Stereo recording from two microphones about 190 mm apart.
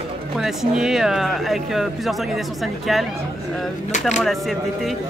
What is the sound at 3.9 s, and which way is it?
Speech, 40° left (ahead or behind).